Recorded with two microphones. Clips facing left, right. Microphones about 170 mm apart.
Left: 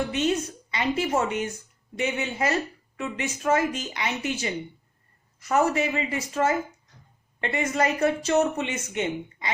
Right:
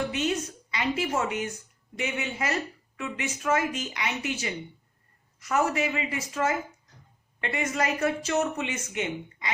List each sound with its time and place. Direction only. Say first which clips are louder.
0.7 s speech: left 3 dB; 30° left (ahead or behind)